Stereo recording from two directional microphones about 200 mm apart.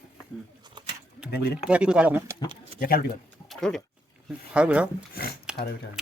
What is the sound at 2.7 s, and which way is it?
Speech, 45° left (ahead or behind).